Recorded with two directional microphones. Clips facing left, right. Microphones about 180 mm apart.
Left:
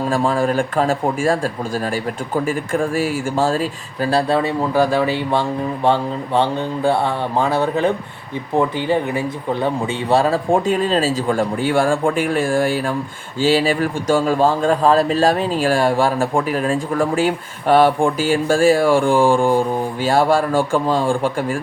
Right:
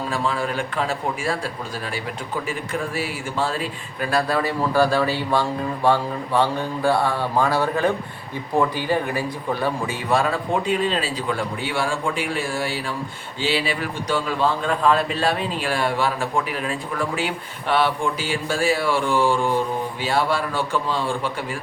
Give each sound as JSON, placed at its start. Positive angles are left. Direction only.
{"t": 0.1, "sound": "speech", "side_deg": 45}
{"t": 10.5, "sound": "a man's voice", "side_deg": 45}